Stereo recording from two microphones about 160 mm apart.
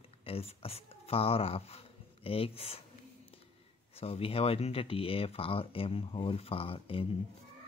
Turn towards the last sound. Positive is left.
turn(degrees=35)  # may be behind; listen again after turning